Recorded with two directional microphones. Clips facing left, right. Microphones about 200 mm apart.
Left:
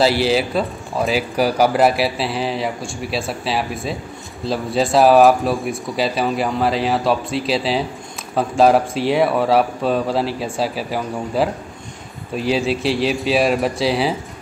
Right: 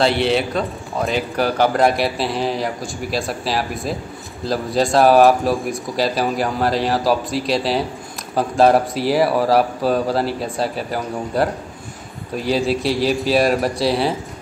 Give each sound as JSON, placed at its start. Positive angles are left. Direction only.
{"t": 0.0, "sound": "speech", "side_deg": 0}